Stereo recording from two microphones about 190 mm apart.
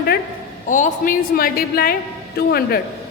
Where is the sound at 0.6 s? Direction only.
40° left (ahead or behind).